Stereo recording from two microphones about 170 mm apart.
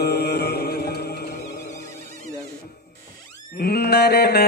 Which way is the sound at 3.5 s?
70° left (ahead or behind).